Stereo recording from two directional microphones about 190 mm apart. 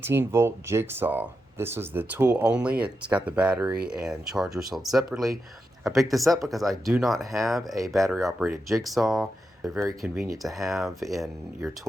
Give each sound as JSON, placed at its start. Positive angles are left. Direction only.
{"t": 0.0, "sound": "speech", "side_deg": -10}
{"t": 10.4, "sound": "speech", "side_deg": 0}